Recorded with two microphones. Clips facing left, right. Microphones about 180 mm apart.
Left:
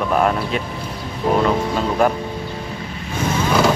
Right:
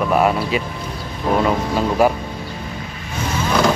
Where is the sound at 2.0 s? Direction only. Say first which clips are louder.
Right 1 dB; 5° right (ahead or behind).